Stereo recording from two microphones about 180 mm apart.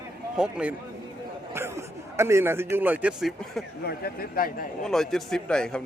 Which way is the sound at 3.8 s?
55° left (ahead or behind).